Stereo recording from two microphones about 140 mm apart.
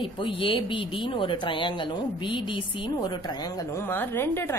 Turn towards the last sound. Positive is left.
turn(degrees=15)  # may be behind; listen again after turning